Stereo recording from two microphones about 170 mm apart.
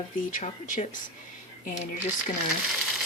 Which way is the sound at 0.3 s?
45° left (ahead or behind).